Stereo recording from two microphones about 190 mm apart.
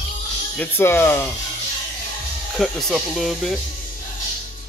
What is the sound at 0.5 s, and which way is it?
Speech, 10° left (ahead or behind).